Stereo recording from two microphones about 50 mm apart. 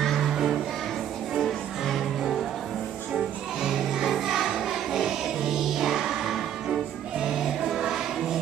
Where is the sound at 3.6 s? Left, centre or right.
Centre.